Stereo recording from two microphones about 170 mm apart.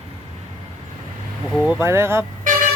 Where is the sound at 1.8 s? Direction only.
15° right (ahead or behind).